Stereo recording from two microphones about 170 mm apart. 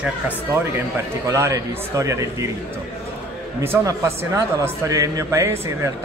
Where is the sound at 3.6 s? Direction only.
15° right (ahead or behind).